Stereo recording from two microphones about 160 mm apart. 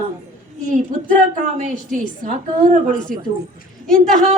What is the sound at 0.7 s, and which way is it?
A woman's voice, 50° right (ahead or behind).